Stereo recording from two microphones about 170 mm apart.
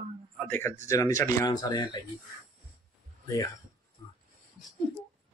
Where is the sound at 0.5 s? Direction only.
15° left (ahead or behind).